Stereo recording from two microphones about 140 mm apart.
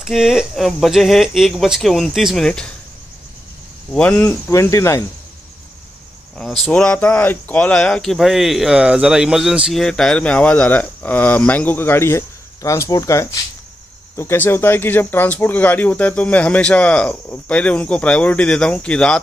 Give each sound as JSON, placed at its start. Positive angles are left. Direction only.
{"t": 0.0, "sound": "speech", "side_deg": -5}
{"t": 3.9, "sound": "speech", "side_deg": 10}
{"t": 6.3, "sound": "speech", "side_deg": 0}